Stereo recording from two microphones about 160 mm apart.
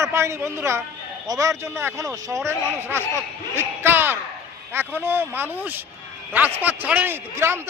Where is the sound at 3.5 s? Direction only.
15° right (ahead or behind).